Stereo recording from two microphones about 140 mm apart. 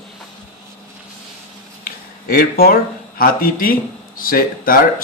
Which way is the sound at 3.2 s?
90° left.